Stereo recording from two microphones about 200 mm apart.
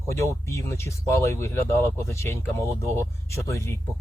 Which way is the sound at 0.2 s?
15° left (ahead or behind).